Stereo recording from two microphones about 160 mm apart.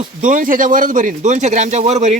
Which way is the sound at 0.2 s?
55° right (ahead or behind).